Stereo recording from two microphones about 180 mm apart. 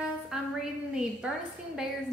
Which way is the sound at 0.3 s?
5° right (ahead or behind).